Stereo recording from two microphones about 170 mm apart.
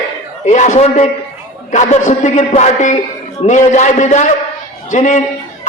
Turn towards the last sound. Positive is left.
turn(degrees=45)  # may be behind; listen again after turning